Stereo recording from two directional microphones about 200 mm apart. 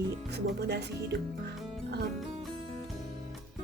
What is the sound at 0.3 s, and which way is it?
Speech, 55° right (ahead or behind).